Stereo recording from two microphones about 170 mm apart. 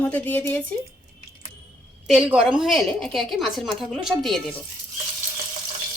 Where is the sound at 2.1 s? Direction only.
5° right (ahead or behind).